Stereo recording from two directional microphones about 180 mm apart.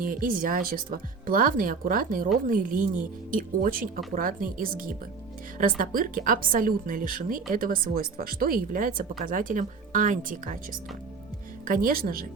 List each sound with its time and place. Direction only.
0.0 s a woman's voice: 50° right (ahead or behind)